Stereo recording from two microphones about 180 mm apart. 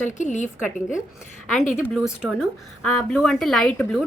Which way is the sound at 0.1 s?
45° left (ahead or behind).